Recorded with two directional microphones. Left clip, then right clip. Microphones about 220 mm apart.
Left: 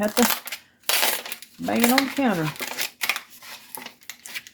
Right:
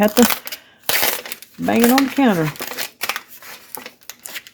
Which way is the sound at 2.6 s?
30° right (ahead or behind).